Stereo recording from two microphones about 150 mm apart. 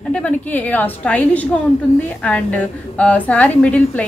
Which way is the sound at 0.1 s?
10° left (ahead or behind).